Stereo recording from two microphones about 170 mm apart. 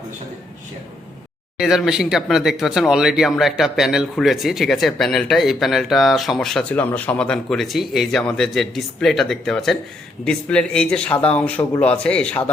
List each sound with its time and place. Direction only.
1.5 s a man's voice: 5° right (ahead or behind)